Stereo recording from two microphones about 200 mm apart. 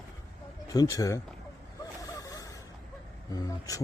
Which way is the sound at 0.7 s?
20° left (ahead or behind).